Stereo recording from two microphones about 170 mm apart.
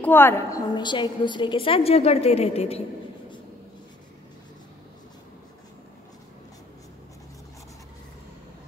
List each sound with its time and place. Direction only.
0.0 s a woman's voice: 10° left (ahead or behind); by 2.8 s 35° left (ahead or behind)